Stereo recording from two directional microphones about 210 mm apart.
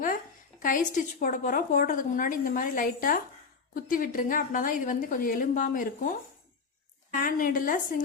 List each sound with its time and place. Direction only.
0.6 s a woman's voice: 40° left (ahead or behind)
7.1 s a woman's voice: 40° left (ahead or behind)